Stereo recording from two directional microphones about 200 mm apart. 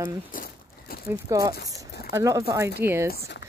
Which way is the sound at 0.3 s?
45° left (ahead or behind).